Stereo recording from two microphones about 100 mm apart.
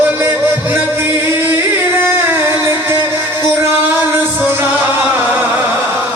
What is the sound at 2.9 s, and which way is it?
Music, 20° right (ahead or behind).